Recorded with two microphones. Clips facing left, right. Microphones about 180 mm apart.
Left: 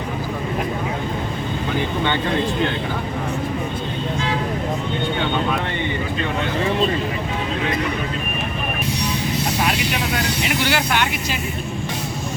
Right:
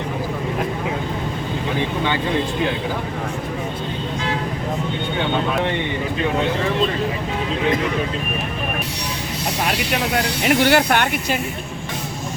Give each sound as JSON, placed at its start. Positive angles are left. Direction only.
{"t": 10.4, "sound": "speech", "side_deg": -50}